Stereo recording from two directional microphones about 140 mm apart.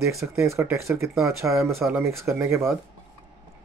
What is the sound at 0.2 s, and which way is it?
Speech, 20° right (ahead or behind).